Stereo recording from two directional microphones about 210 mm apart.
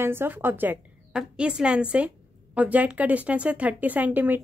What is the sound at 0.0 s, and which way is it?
A woman's voice, 10° right (ahead or behind).